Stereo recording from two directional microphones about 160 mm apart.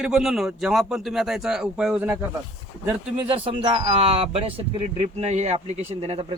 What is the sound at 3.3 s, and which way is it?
Speech, 35° right (ahead or behind).